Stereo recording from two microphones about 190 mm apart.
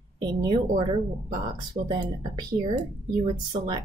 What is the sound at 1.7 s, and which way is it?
Speech, 40° right (ahead or behind).